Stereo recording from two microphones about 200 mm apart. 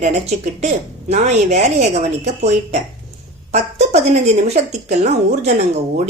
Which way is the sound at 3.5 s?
35° right (ahead or behind).